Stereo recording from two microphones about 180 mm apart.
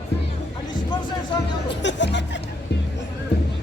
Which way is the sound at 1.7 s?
80° left.